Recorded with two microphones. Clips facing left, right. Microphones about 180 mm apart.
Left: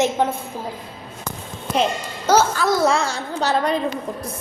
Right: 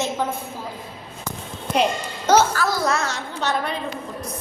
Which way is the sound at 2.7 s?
25° left (ahead or behind).